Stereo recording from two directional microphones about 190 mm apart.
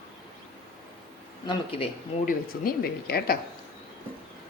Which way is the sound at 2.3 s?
50° left (ahead or behind).